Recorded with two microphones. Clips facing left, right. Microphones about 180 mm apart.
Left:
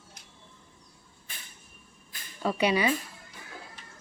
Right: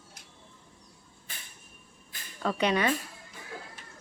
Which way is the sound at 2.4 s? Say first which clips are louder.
Left 1 dB; 10° left (ahead or behind).